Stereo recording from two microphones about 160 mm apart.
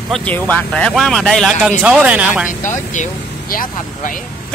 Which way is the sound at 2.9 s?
55° left (ahead or behind).